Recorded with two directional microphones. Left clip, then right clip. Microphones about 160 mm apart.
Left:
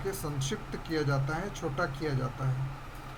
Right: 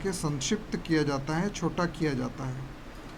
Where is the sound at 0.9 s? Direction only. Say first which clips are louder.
Right 3 dB; 30° right (ahead or behind).